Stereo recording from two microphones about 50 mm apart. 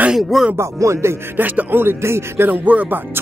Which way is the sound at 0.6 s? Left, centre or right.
Right.